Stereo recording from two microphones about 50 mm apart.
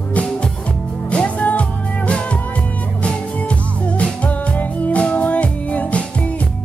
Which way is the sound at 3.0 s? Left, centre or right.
Left.